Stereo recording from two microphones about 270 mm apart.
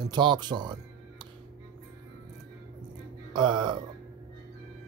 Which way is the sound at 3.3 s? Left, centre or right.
Centre.